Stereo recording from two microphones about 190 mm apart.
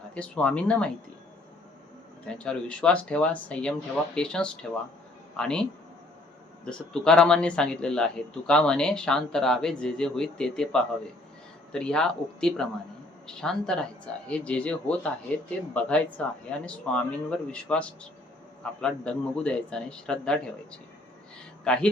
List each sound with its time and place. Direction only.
0.1 s speech: 5° left (ahead or behind)
2.2 s speech: 5° left (ahead or behind)
6.7 s speech: 5° left (ahead or behind)
21.6 s speech: 5° left (ahead or behind)